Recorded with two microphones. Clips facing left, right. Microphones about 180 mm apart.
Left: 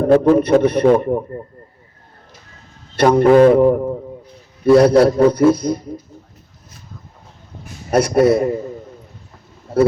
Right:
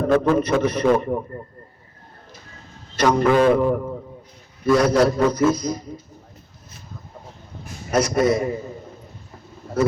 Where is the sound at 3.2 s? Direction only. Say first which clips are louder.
Left 8 dB; 45° left (ahead or behind).